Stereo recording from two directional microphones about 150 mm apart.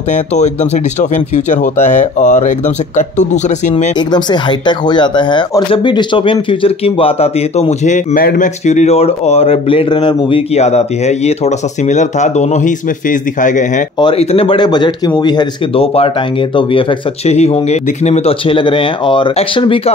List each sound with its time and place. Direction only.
0.1 s speech: 50° left (ahead or behind)
4.1 s speech: 30° left (ahead or behind); by 8.5 s 70° left (ahead or behind)
8.6 s speech: 45° left (ahead or behind)
13.9 s speech: 40° left (ahead or behind)
17.3 s speech: 45° left (ahead or behind)